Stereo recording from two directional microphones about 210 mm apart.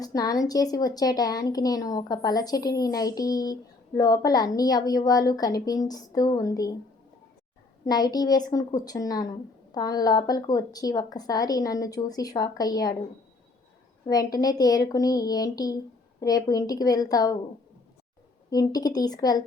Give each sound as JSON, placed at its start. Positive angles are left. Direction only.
{"t": 0.0, "sound": "a woman's voice", "side_deg": 15}
{"t": 7.9, "sound": "a woman's voice", "side_deg": 20}
{"t": 14.1, "sound": "a woman's voice", "side_deg": 20}
{"t": 18.5, "sound": "a woman's voice", "side_deg": 20}